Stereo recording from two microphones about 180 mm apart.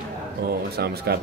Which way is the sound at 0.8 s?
60° right (ahead or behind).